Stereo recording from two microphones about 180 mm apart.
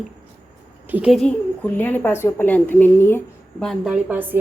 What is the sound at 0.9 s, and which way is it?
A woman's voice, 5° right (ahead or behind).